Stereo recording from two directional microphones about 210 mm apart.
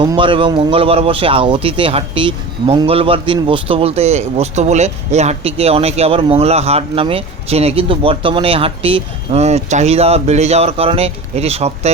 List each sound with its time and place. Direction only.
0.0 s speech: 25° right (ahead or behind)